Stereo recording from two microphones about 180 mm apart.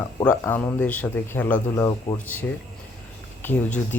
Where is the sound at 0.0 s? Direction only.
15° left (ahead or behind).